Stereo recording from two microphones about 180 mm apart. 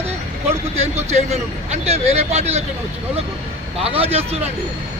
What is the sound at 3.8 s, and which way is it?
Speech, 35° right (ahead or behind).